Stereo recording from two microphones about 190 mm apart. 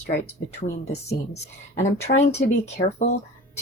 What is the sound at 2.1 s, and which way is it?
Speech, 45° left (ahead or behind).